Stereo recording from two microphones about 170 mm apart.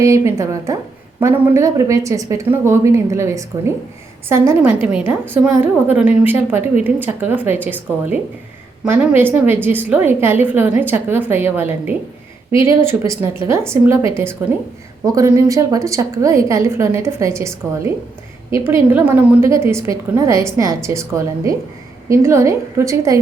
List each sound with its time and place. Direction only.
0.0 s a woman's voice: 20° right (ahead or behind)